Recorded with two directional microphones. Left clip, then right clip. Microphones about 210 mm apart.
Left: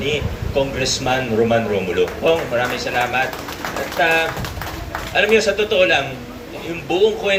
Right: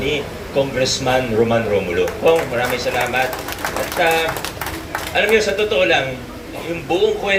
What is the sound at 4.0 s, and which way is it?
Speech, 35° left (ahead or behind).